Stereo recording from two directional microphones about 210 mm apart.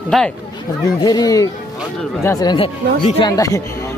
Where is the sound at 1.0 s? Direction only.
20° left (ahead or behind).